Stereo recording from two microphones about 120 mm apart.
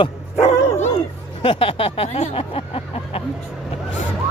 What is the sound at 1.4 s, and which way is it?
Speech, 50° left (ahead or behind).